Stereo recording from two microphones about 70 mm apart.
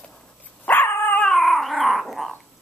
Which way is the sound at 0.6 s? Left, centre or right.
Left.